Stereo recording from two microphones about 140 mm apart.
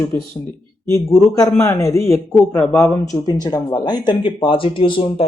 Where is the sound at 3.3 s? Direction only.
30° left (ahead or behind).